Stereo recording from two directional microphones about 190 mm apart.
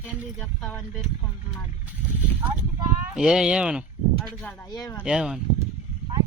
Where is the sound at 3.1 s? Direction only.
5° right (ahead or behind).